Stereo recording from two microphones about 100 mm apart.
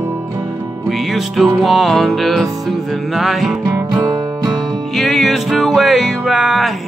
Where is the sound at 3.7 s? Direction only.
30° right (ahead or behind).